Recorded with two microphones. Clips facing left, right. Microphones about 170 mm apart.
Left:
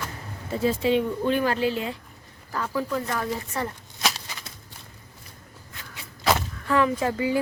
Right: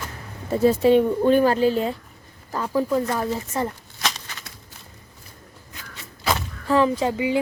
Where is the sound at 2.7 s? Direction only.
25° right (ahead or behind).